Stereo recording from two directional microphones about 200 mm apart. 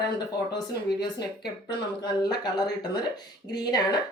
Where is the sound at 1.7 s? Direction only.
20° left (ahead or behind).